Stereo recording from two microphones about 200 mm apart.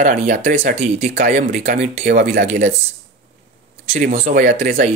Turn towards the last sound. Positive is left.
turn(degrees=-35)  # may be behind; listen again after turning